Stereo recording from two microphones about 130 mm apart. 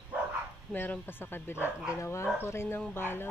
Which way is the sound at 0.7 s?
15° left (ahead or behind).